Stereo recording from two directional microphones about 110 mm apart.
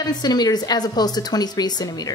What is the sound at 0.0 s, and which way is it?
A woman's voice, 40° left (ahead or behind).